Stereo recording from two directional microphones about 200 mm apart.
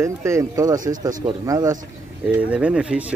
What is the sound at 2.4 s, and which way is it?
Speech, 5° right (ahead or behind).